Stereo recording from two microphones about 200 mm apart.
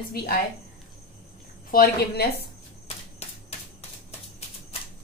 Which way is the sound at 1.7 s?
50° left (ahead or behind).